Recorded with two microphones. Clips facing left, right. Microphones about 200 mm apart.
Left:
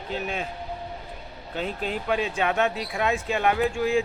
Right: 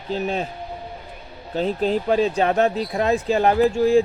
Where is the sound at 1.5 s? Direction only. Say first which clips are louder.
Right 8 dB; 35° right (ahead or behind).